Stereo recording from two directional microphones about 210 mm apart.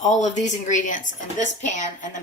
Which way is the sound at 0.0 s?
35° left (ahead or behind).